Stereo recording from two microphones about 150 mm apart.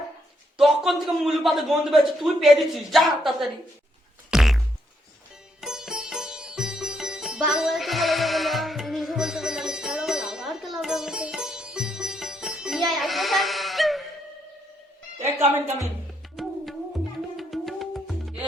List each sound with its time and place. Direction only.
0.5 s a man's voice: centre (ahead or behind)
4.3 s music: centre (ahead or behind)
5.5 s sitar: 5° right (ahead or behind)
15.2 s speech: 15° right (ahead or behind)
16.3 s music: centre (ahead or behind)